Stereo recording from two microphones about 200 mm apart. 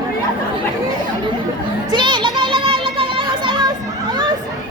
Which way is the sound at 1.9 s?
25° right (ahead or behind).